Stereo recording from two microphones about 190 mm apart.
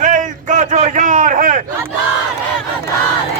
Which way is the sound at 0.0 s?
40° right (ahead or behind).